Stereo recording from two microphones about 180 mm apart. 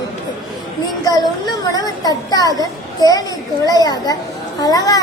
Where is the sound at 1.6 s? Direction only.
20° left (ahead or behind).